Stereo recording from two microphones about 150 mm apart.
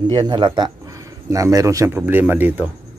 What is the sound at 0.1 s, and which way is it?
A man's voice, 30° right (ahead or behind).